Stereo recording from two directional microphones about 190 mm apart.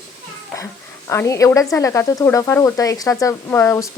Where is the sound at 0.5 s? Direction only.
15° left (ahead or behind).